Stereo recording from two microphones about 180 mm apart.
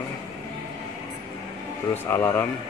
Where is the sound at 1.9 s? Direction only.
10° left (ahead or behind).